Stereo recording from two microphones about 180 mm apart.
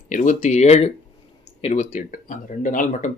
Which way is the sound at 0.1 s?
45° left (ahead or behind).